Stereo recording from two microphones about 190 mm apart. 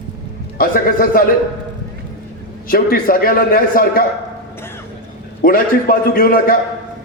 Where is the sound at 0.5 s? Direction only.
50° left (ahead or behind).